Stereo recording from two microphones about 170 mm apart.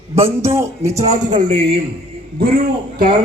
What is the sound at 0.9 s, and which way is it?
Speech, 40° right (ahead or behind).